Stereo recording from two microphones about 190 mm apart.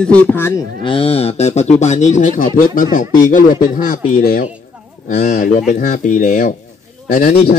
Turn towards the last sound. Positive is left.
turn(degrees=50)  # may be behind; listen again after turning